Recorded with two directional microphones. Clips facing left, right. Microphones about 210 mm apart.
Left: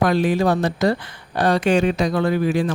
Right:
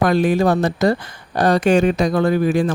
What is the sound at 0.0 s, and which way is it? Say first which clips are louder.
Speech: right 2 dB; 50° right (ahead or behind).